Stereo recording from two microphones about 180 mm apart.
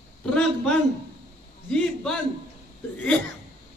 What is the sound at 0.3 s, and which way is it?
Speech, 5° left (ahead or behind).